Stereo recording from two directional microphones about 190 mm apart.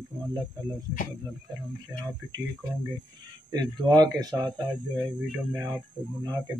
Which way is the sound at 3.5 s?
20° right (ahead or behind).